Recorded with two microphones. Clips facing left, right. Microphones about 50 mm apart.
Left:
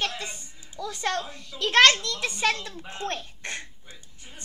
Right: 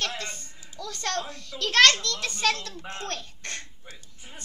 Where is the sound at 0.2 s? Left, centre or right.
Centre.